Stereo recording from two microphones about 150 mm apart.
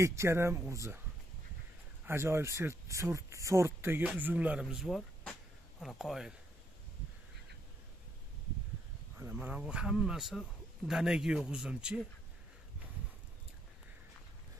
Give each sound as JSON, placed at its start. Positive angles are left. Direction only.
{"t": 0.0, "sound": "speech", "side_deg": -20}
{"t": 2.0, "sound": "speech", "side_deg": -15}
{"t": 9.2, "sound": "speech", "side_deg": -10}